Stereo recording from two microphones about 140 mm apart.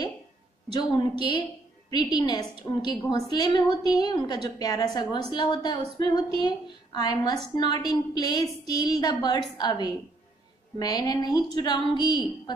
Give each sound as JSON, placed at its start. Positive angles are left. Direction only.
{"t": 0.7, "sound": "a woman's voice", "side_deg": 35}